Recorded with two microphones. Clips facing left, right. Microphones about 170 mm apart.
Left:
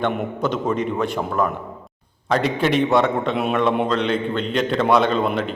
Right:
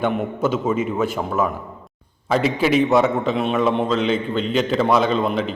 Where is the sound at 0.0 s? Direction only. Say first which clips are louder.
Right 2 dB; 5° right (ahead or behind).